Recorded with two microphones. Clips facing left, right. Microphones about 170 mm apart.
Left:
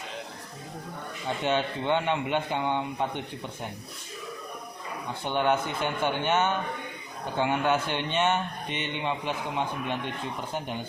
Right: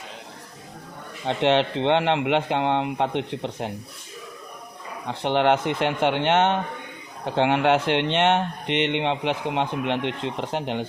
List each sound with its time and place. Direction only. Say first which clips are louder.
1.3 s speech: right 7 dB; 90° right
5.0 s speech: right 6 dB; 90° right